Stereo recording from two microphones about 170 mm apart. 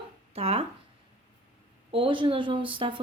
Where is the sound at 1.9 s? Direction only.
30° right (ahead or behind).